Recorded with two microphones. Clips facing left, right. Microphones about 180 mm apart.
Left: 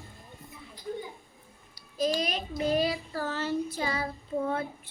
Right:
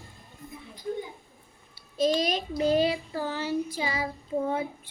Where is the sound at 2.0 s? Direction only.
30° right (ahead or behind).